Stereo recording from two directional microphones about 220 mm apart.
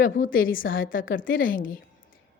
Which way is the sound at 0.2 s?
35° left (ahead or behind).